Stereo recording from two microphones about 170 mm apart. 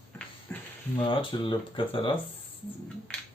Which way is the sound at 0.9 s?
35° left (ahead or behind).